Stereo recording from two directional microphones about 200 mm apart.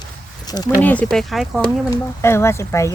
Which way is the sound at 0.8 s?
5° left (ahead or behind).